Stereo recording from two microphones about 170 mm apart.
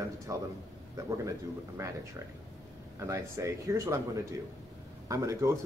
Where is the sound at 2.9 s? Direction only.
15° right (ahead or behind).